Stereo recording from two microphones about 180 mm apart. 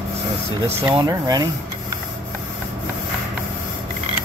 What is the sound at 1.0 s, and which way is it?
Speech, 20° right (ahead or behind).